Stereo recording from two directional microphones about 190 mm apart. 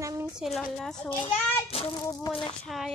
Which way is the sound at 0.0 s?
15° right (ahead or behind).